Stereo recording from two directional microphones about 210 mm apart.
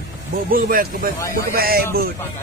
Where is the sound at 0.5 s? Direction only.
45° right (ahead or behind).